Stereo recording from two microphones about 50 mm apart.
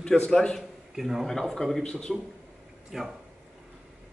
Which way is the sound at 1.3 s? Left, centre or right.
Centre.